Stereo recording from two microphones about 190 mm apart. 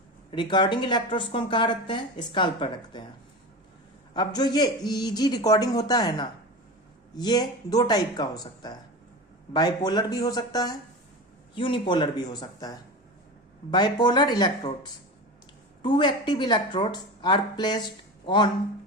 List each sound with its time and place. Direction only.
0.3 s speech: 25° left (ahead or behind)
4.1 s speech: 25° left (ahead or behind)